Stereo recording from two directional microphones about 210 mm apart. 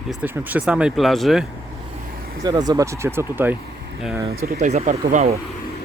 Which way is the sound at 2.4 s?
20° right (ahead or behind).